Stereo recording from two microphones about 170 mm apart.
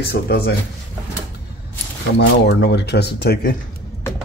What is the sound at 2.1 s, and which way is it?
Speech, 85° left.